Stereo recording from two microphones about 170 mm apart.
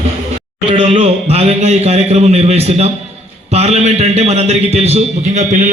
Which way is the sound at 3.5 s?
40° right (ahead or behind).